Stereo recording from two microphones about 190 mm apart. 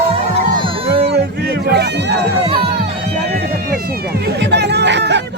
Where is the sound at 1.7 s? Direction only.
60° right (ahead or behind).